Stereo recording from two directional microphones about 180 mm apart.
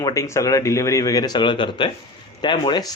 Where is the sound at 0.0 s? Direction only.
20° left (ahead or behind).